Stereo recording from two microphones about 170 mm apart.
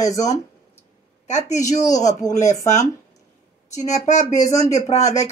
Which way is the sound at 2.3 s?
45° left (ahead or behind).